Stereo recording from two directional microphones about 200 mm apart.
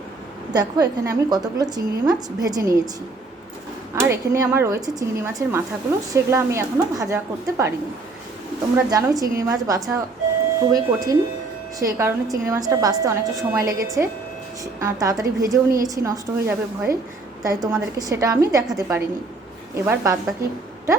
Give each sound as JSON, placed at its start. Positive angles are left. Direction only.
{"t": 0.5, "sound": "a woman's voice", "side_deg": -20}
{"t": 3.9, "sound": "a woman's voice", "side_deg": -15}
{"t": 8.7, "sound": "a woman's voice", "side_deg": -15}